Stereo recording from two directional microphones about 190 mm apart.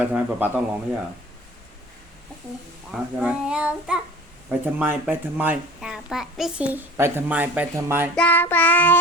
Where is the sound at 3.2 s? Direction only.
5° right (ahead or behind).